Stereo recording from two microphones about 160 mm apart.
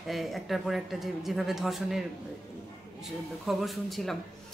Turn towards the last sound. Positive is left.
turn(degrees=0)  # may be behind; listen again after turning